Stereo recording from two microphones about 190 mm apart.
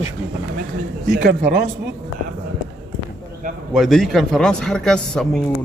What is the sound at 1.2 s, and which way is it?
Speech, 60° right (ahead or behind).